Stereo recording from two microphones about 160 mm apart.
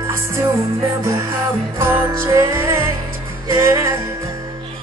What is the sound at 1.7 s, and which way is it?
Music, 15° right (ahead or behind).